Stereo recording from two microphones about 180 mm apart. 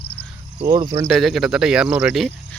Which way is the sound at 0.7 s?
30° right (ahead or behind).